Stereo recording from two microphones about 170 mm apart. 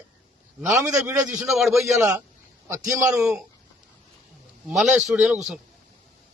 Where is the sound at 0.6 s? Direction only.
15° right (ahead or behind).